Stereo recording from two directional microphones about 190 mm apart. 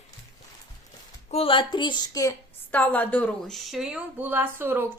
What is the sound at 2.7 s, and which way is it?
A woman's voice, 10° left (ahead or behind).